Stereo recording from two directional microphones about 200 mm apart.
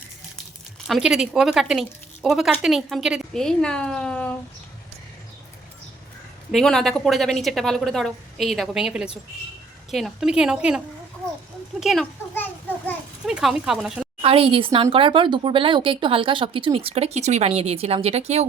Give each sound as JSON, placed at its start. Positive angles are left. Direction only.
{"t": 0.9, "sound": "speech", "side_deg": 0}
{"t": 6.5, "sound": "speech", "side_deg": 0}
{"t": 11.8, "sound": "speech", "side_deg": 0}
{"t": 12.3, "sound": "children playing", "side_deg": 10}
{"t": 13.2, "sound": "speech", "side_deg": 0}
{"t": 14.2, "sound": "speech", "side_deg": -30}